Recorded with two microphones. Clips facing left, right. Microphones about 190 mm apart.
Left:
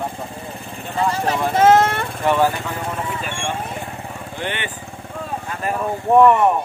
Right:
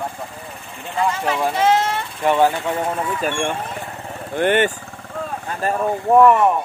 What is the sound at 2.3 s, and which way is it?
Speech, 20° right (ahead or behind).